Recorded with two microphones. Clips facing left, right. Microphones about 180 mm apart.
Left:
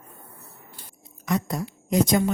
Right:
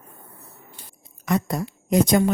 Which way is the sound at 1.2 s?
60° right (ahead or behind).